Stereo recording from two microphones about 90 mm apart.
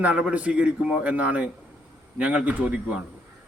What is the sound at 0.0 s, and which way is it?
A man's voice, 15° right (ahead or behind).